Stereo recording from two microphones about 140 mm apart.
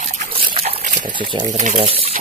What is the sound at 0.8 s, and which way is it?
Water, 70° right (ahead or behind).